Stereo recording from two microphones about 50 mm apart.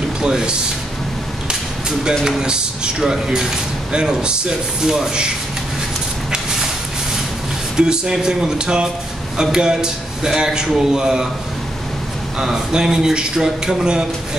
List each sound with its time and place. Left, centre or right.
0.2 s speech: centre
1.5 s a sound: centre
2.2 s speech: centre
6.3 s a sound: centre
7.7 s speech: centre
12.4 s speech: centre